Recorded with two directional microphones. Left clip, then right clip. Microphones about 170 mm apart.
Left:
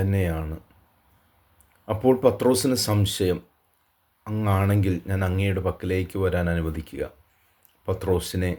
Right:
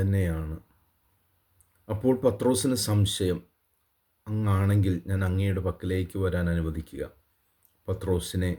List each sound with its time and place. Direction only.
0.0 s speech: 20° right (ahead or behind)
1.8 s speech: 20° right (ahead or behind)